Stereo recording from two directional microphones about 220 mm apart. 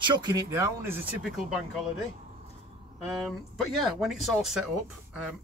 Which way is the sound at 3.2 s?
Centre (ahead or behind).